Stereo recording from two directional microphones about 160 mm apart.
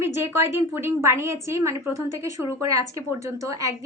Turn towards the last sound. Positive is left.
turn(degrees=-20)  # may be behind; listen again after turning